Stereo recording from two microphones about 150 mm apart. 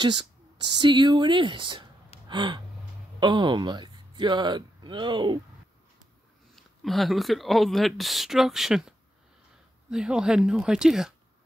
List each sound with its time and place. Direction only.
0.0 s speech: 30° right (ahead or behind)
2.2 s gasp: 30° right (ahead or behind)
3.2 s speech: 30° right (ahead or behind)
6.5 s speech: centre (ahead or behind)